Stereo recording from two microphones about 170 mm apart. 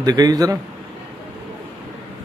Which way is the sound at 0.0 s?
20° right (ahead or behind).